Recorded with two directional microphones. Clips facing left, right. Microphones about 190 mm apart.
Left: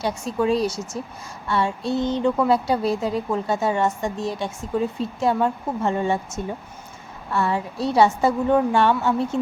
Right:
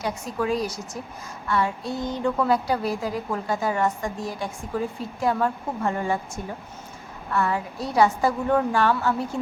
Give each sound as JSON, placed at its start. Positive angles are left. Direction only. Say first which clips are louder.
{"t": 0.0, "sound": "a woman's voice", "louder": "left 4 dB", "side_deg": 30}